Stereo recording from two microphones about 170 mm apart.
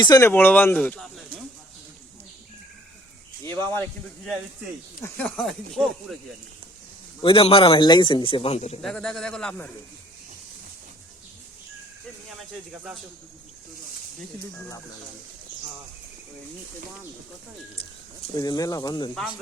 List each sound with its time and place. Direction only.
0.0 s speech: 20° left (ahead or behind); by 1.2 s centre (ahead or behind)
3.4 s speech: 15° left (ahead or behind)
5.0 s speech: 10° left (ahead or behind)
7.2 s speech: 30° left (ahead or behind)
8.8 s speech: 5° left (ahead or behind)
12.3 s speech: 5° right (ahead or behind)
18.3 s speech: 20° left (ahead or behind)